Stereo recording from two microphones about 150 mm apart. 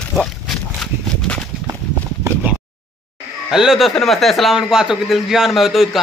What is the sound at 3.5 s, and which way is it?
A man's voice, 5° right (ahead or behind).